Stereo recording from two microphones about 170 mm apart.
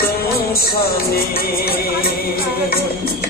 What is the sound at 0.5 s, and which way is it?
Music, 65° left (ahead or behind).